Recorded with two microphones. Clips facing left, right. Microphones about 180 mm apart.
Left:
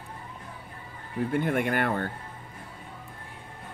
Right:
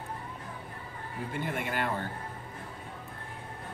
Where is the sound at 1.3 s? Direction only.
55° left (ahead or behind).